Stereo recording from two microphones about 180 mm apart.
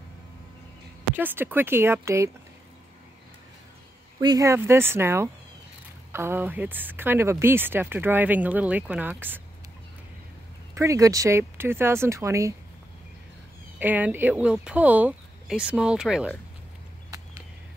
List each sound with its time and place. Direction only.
1.1 s speech: 10° right (ahead or behind)
4.2 s speech: 20° right (ahead or behind)
10.7 s speech: 15° right (ahead or behind)
13.7 s speech: 10° right (ahead or behind)